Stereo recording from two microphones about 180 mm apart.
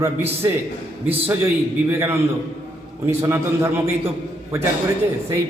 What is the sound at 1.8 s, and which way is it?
A man's voice, 10° right (ahead or behind).